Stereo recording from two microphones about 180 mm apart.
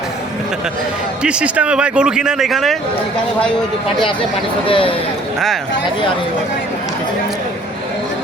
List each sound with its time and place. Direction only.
1.2 s a man's voice: 5° right (ahead or behind)
4.6 s speech: 30° left (ahead or behind)